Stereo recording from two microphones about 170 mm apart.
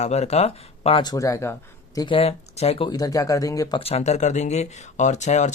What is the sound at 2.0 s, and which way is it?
Speech, 30° left (ahead or behind).